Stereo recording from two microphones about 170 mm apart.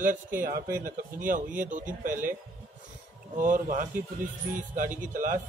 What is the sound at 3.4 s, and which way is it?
Speech, 50° right (ahead or behind).